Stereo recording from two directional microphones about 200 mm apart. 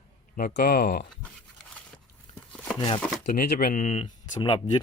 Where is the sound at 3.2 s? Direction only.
50° left (ahead or behind); by 4.1 s 35° left (ahead or behind).